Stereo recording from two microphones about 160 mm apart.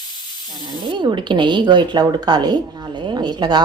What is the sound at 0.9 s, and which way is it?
Speech, 30° right (ahead or behind).